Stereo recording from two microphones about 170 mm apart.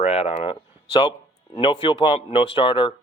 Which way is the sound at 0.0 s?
40° left (ahead or behind).